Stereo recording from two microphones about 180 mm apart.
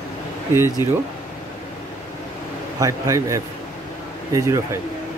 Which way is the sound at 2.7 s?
20° right (ahead or behind).